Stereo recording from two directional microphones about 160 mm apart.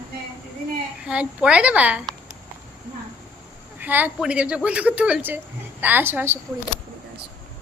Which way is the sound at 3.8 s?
10° right (ahead or behind).